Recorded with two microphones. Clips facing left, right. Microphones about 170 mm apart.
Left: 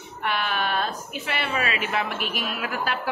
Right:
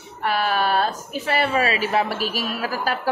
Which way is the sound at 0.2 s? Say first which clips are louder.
Right 5 dB; 40° right (ahead or behind).